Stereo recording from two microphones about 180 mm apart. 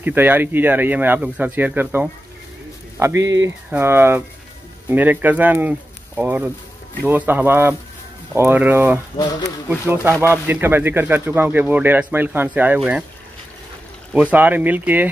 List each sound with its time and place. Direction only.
0.0 s speech: 10° right (ahead or behind)
9.1 s speech: 25° left (ahead or behind)
9.7 s speech: 10° right (ahead or behind)
14.1 s speech: 10° right (ahead or behind)